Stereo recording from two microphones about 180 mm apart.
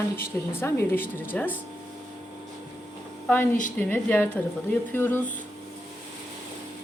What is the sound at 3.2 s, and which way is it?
A woman's voice, 10° left (ahead or behind).